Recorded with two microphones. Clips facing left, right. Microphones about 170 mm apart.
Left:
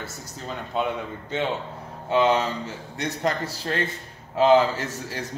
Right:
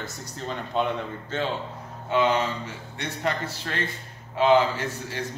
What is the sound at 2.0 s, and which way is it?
A man's voice, 30° left (ahead or behind).